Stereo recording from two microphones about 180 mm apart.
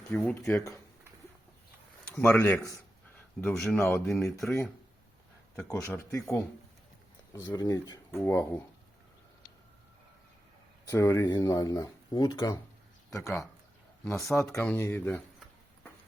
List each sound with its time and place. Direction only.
0.1 s speech: 10° left (ahead or behind)
2.1 s speech: 10° left (ahead or behind)
3.8 s speech: 15° left (ahead or behind)
4.0 s speech: centre (ahead or behind)
5.5 s speech: 10° left (ahead or behind)
10.8 s speech: 15° left (ahead or behind)